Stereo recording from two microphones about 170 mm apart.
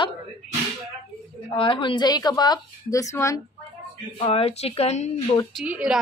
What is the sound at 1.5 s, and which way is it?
A woman's voice, 30° left (ahead or behind).